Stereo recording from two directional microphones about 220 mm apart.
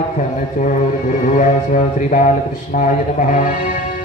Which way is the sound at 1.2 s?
35° left (ahead or behind).